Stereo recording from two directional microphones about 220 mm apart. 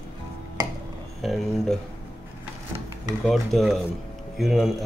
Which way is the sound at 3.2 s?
Centre (ahead or behind).